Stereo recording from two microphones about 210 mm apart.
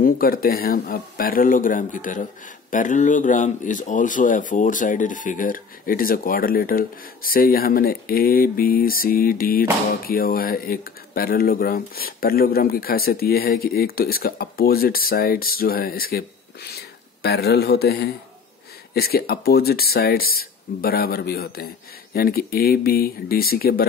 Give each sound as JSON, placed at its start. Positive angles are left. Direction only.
{"t": 0.0, "sound": "speech", "side_deg": 45}